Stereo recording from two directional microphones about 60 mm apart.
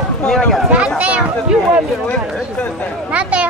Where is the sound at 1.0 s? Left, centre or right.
Right.